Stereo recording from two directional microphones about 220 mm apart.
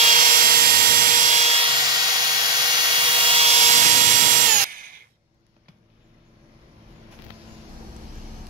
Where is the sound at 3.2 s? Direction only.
25° right (ahead or behind).